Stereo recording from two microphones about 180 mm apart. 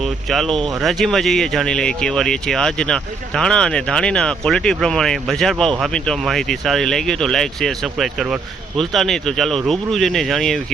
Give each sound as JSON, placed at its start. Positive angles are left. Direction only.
{"t": 0.3, "sound": "speech", "side_deg": 0}